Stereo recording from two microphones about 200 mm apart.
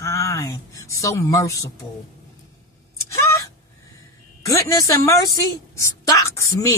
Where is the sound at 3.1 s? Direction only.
15° left (ahead or behind).